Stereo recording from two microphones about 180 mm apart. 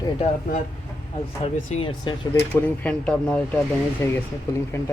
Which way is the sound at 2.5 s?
10° left (ahead or behind).